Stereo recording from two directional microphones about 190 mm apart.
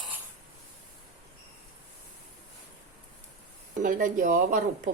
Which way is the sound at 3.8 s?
45° right (ahead or behind).